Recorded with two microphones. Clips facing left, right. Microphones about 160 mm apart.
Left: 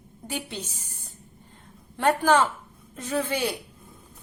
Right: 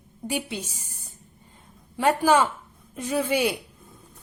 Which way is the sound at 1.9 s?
10° right (ahead or behind).